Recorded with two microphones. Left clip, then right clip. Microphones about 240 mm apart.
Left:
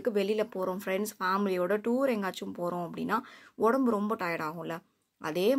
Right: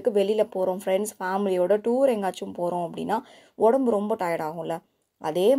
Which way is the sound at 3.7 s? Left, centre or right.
Right.